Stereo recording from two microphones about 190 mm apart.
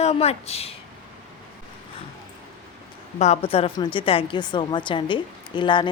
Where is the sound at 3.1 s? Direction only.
35° left (ahead or behind).